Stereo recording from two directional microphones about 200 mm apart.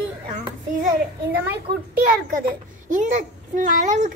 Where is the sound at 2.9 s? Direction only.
40° right (ahead or behind).